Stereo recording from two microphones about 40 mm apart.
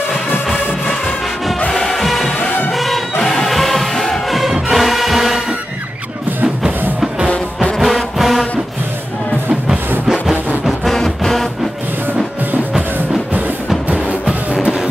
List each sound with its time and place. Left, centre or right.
1.7 s music: centre
2.4 s music: left
2.7 s music: centre
7.8 s music: centre
10.6 s music: centre
14.5 s music: right